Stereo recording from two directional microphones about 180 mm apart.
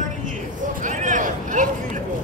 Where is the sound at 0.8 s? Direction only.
45° right (ahead or behind).